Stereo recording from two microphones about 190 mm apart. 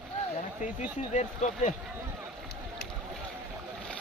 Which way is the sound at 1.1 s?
40° left (ahead or behind).